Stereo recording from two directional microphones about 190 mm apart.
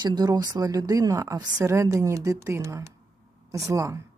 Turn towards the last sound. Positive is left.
turn(degrees=-15)  # may be behind; listen again after turning